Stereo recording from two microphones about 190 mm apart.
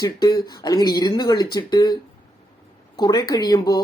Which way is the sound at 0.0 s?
20° left (ahead or behind).